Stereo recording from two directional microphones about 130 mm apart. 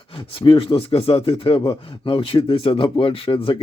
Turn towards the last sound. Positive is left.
turn(degrees=45)  # may be behind; listen again after turning